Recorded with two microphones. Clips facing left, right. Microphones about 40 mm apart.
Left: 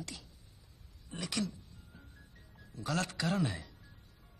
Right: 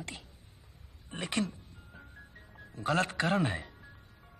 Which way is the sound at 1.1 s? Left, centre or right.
Right.